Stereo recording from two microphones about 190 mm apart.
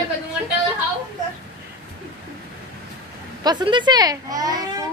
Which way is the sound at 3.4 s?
20° right (ahead or behind).